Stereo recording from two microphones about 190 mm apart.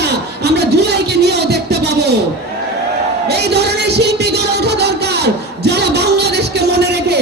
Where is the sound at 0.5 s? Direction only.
60° right (ahead or behind).